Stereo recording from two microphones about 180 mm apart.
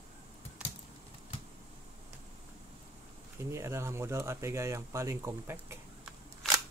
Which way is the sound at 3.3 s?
15° right (ahead or behind).